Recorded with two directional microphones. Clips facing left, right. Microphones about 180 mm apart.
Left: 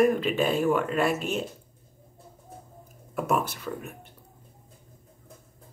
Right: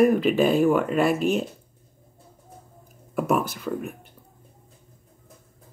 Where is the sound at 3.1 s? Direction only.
Centre (ahead or behind).